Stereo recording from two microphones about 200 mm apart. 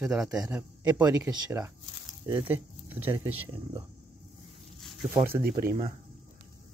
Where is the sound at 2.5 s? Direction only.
10° right (ahead or behind).